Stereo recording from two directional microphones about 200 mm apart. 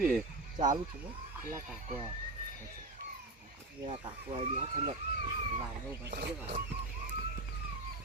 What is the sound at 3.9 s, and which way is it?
Speech, 25° right (ahead or behind).